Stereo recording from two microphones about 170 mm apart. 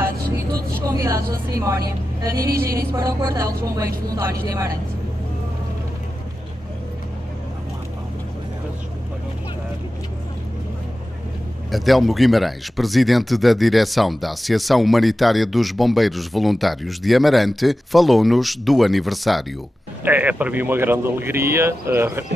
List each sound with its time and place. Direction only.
0.8 s vehicle: 20° right (ahead or behind)
2.5 s music: 60° right (ahead or behind)
3.0 s speech: 20° right (ahead or behind)
11.7 s speech: centre (ahead or behind)